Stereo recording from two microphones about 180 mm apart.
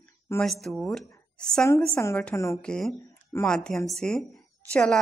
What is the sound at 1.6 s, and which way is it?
A woman's voice, 15° left (ahead or behind).